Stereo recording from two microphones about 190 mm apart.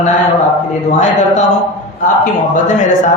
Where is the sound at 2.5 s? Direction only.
40° left (ahead or behind).